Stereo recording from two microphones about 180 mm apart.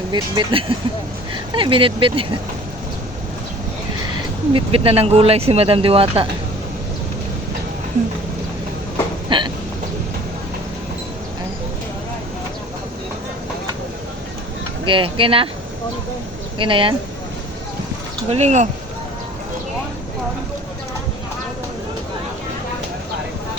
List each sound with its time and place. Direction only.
0.1 s speech: 25° right (ahead or behind)
4.5 s speech: 30° right (ahead or behind)
9.3 s hiccup: 25° right (ahead or behind)
14.8 s speech: 30° right (ahead or behind)
16.6 s speech: 30° right (ahead or behind)
18.3 s speech: 35° right (ahead or behind)